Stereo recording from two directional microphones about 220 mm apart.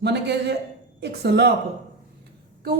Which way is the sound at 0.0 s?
50° right (ahead or behind).